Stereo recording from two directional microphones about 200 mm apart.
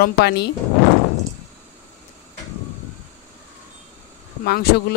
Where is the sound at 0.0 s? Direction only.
55° left (ahead or behind).